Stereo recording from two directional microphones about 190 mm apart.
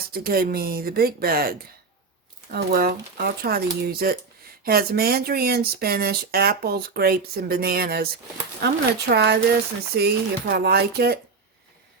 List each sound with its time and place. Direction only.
0.1 s speech: 50° right (ahead or behind)